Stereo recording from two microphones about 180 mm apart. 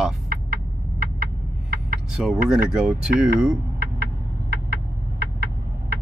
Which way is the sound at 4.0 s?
60° right (ahead or behind).